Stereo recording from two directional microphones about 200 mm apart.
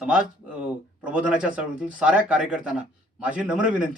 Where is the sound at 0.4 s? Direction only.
5° right (ahead or behind).